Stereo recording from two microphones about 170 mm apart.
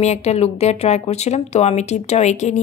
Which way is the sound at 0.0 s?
40° left (ahead or behind).